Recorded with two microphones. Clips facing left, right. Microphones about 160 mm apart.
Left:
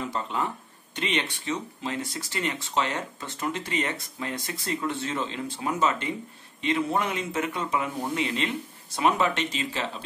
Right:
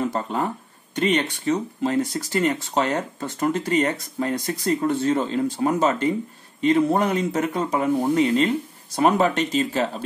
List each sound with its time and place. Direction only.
0.0 s speech: 45° right (ahead or behind)